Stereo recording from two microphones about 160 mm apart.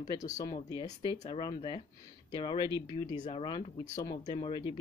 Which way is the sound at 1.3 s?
25° left (ahead or behind).